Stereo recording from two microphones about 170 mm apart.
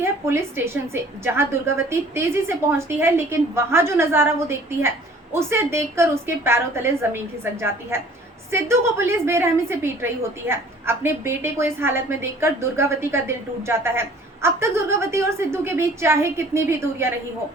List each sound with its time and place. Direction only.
0.0 s a woman's voice: 15° right (ahead or behind)